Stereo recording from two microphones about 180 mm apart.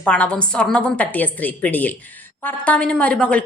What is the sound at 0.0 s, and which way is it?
A woman's voice, 5° left (ahead or behind).